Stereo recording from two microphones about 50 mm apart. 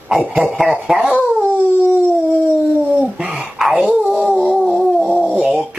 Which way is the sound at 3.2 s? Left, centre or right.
Centre.